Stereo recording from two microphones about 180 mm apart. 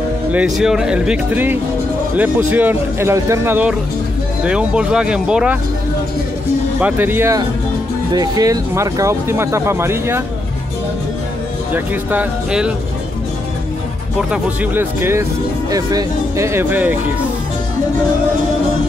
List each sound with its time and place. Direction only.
0.3 s speech: 5° right (ahead or behind)
6.8 s speech: 10° right (ahead or behind)
11.7 s speech: 10° right (ahead or behind)
14.3 s speech: 10° right (ahead or behind)